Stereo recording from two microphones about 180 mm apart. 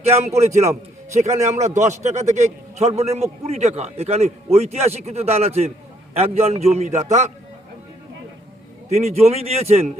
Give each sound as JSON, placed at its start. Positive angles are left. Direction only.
{"t": 0.0, "sound": "a man's voice", "side_deg": -35}
{"t": 8.9, "sound": "a man's voice", "side_deg": -35}